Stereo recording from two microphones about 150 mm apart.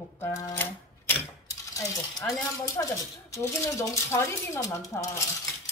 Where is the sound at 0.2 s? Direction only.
20° left (ahead or behind).